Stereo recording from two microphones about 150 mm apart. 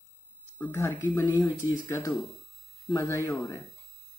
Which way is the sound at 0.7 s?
15° left (ahead or behind).